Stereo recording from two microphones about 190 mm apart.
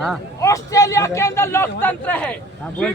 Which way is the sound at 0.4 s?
15° left (ahead or behind).